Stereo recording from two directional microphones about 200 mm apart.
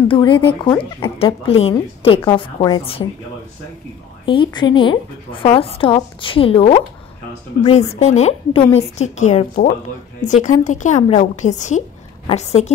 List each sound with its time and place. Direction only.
0.1 s a woman's voice: 25° left (ahead or behind)
4.3 s a woman's voice: 25° left (ahead or behind)